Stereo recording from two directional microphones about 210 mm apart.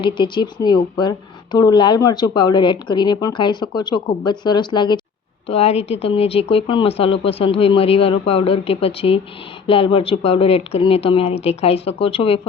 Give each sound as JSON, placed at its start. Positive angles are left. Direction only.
{"t": 0.0, "sound": "a woman's voice", "side_deg": 20}